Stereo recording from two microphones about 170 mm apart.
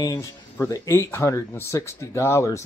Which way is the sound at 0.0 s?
20° left (ahead or behind).